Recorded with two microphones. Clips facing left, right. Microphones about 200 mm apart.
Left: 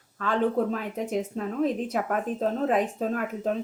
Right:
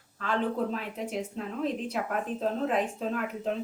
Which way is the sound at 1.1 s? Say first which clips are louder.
Left 5 dB; 45° left (ahead or behind).